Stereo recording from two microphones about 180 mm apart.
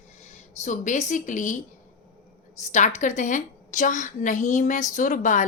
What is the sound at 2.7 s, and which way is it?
A woman's voice, 40° left (ahead or behind).